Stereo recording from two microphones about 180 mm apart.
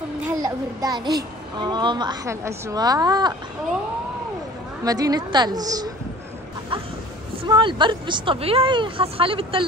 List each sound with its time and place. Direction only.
0.4 s a child's voice: 20° right (ahead or behind)
4.8 s a child's voice: 20° right (ahead or behind)
7.4 s a child's voice: 25° right (ahead or behind)